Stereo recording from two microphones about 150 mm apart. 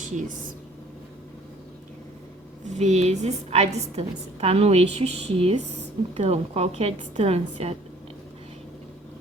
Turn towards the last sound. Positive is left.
turn(degrees=-45)  # may be behind; listen again after turning